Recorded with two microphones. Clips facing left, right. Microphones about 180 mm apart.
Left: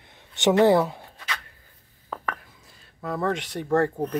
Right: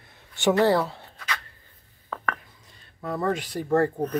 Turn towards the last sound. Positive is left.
turn(degrees=0)  # may be behind; listen again after turning